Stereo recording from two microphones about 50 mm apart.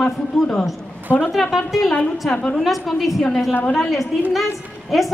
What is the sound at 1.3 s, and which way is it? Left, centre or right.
Speech, centre.